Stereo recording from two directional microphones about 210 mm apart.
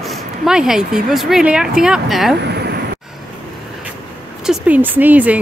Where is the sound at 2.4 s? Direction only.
50° right (ahead or behind).